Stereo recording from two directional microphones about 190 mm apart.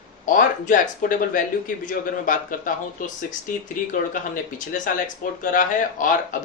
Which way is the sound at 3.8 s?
45° left (ahead or behind).